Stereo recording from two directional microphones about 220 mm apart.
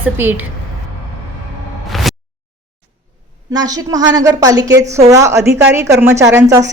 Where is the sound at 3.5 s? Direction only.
15° right (ahead or behind).